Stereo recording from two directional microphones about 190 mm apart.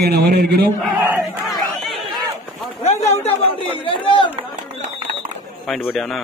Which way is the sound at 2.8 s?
35° left (ahead or behind).